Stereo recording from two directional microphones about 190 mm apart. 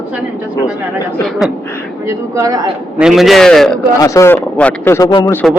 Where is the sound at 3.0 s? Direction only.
Centre (ahead or behind).